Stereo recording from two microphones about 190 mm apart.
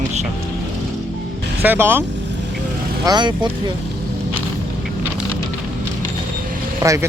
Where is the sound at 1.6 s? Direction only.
10° right (ahead or behind).